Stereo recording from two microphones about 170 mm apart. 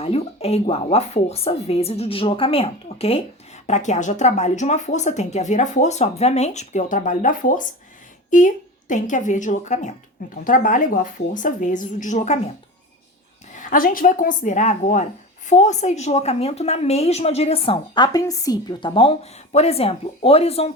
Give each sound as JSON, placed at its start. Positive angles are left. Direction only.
{"t": 0.0, "sound": "a woman's voice", "side_deg": 35}
{"t": 13.6, "sound": "a woman's voice", "side_deg": 55}